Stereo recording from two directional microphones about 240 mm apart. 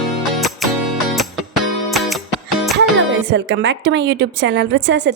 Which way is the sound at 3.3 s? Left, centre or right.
Right.